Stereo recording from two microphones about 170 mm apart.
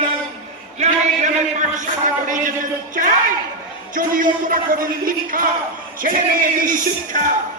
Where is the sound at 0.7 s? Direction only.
40° right (ahead or behind).